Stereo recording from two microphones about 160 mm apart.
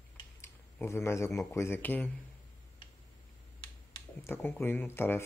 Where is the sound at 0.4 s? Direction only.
15° left (ahead or behind).